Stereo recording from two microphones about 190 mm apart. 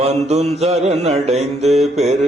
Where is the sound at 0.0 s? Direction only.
35° right (ahead or behind).